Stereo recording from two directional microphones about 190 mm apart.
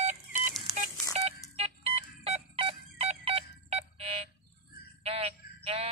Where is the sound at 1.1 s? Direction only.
30° right (ahead or behind).